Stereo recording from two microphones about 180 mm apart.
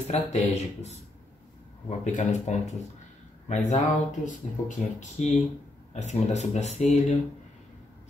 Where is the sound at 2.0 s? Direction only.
40° left (ahead or behind).